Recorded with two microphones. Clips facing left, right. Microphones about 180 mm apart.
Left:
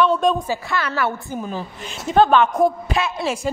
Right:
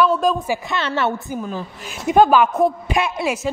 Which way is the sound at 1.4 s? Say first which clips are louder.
Even; centre (ahead or behind).